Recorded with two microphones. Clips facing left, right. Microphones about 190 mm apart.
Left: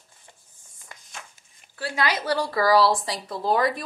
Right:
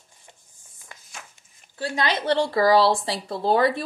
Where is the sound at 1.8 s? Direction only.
25° right (ahead or behind).